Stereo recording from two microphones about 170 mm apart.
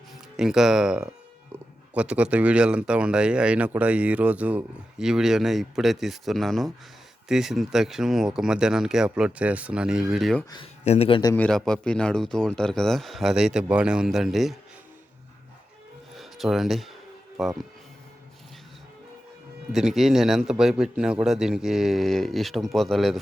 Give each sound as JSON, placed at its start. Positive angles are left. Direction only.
{"t": 0.3, "sound": "speech", "side_deg": -5}
{"t": 10.8, "sound": "a man's voice", "side_deg": 40}
{"t": 11.3, "sound": "speech", "side_deg": 5}
{"t": 16.1, "sound": "speech", "side_deg": 0}
{"t": 19.7, "sound": "speech", "side_deg": 0}